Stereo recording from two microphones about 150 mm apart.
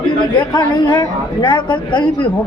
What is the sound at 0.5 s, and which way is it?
Speech, 30° left (ahead or behind).